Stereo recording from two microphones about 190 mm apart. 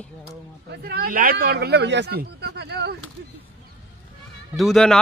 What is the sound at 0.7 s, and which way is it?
Speech, 55° right (ahead or behind).